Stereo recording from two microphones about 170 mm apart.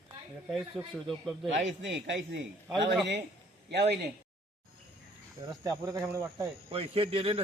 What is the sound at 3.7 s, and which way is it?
Speech, 85° right.